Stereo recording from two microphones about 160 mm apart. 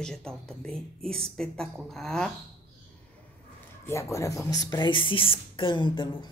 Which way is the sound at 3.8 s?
20° left (ahead or behind).